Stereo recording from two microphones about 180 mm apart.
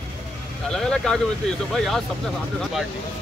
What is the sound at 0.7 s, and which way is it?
Speech, 5° left (ahead or behind).